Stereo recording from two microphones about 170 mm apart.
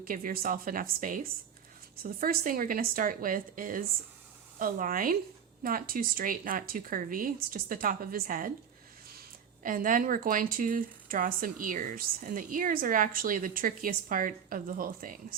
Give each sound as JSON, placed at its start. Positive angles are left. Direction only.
{"t": 0.0, "sound": "a woman's voice", "side_deg": -55}
{"t": 9.6, "sound": "speech", "side_deg": -50}